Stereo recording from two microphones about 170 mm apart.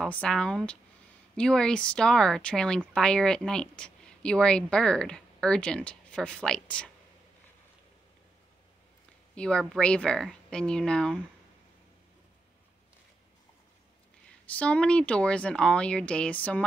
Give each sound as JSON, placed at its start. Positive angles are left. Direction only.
{"t": 0.0, "sound": "speech", "side_deg": 5}
{"t": 9.3, "sound": "speech", "side_deg": 5}
{"t": 14.4, "sound": "speech", "side_deg": 10}